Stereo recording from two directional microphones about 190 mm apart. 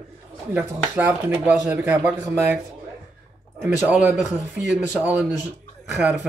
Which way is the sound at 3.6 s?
10° right (ahead or behind).